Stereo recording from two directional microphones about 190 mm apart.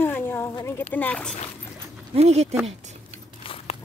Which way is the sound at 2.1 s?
35° right (ahead or behind).